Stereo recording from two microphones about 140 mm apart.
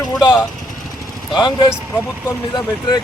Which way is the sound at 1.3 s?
35° left (ahead or behind).